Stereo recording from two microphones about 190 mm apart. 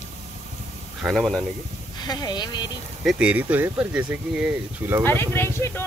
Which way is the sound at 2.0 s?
20° left (ahead or behind).